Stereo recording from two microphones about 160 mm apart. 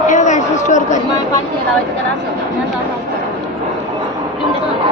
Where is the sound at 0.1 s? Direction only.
50° left (ahead or behind).